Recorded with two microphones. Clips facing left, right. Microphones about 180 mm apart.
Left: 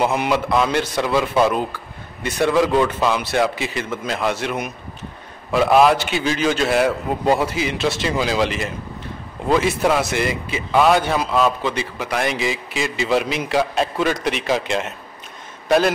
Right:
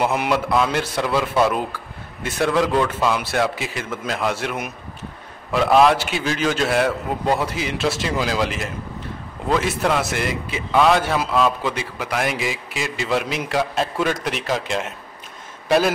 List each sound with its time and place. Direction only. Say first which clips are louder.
0.0 s a man's voice: left 1 dB; 5° right (ahead or behind)